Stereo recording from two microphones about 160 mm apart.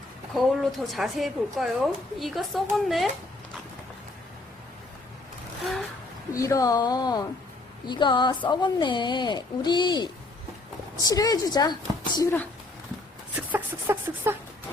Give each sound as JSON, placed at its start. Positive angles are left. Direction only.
{"t": 0.3, "sound": "a woman's voice", "side_deg": 0}
{"t": 6.3, "sound": "a woman's voice", "side_deg": 20}
{"t": 13.3, "sound": "a sound", "side_deg": -10}